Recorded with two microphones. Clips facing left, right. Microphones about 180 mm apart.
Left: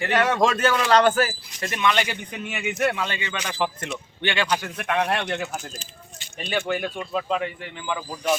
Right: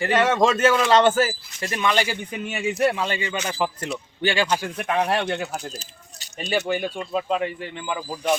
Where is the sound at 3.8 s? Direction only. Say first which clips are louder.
Right 3 dB; 35° right (ahead or behind).